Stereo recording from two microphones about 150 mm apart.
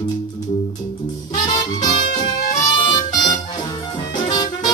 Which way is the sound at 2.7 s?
35° left (ahead or behind).